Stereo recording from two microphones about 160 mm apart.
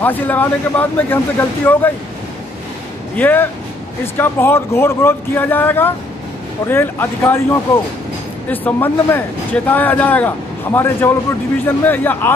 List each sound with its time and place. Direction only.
0.0 s speech: 10° left (ahead or behind)
3.2 s speech: 10° left (ahead or behind)
8.5 s speech: 10° left (ahead or behind)